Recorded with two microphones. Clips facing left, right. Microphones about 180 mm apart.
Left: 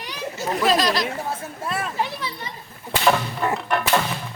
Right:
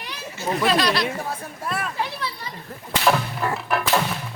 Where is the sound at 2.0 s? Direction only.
20° left (ahead or behind).